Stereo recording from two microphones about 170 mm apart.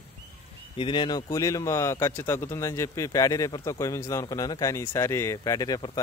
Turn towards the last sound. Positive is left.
turn(degrees=25)  # may be behind; listen again after turning